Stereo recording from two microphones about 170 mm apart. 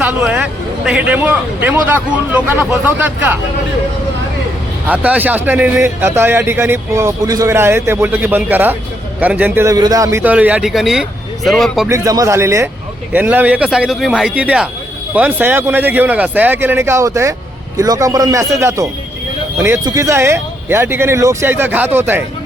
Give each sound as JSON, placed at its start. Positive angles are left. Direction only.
{"t": 0.0, "sound": "a sound", "side_deg": -5}
{"t": 0.9, "sound": "a man's voice", "side_deg": -10}
{"t": 4.9, "sound": "a man's voice", "side_deg": -10}
{"t": 11.9, "sound": "a man's voice", "side_deg": -20}